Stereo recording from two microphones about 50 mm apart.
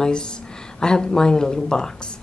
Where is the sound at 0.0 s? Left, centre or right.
Centre.